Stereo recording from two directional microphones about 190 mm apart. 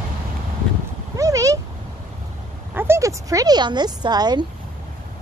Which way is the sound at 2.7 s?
15° right (ahead or behind).